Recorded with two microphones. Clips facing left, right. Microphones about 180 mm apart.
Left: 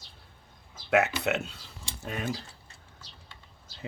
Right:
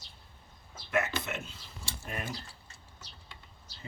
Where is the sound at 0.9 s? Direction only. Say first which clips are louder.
Left 7 dB; 70° left (ahead or behind).